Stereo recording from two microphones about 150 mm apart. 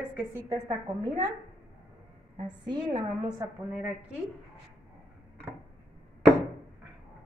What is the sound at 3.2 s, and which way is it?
Speech, 25° right (ahead or behind).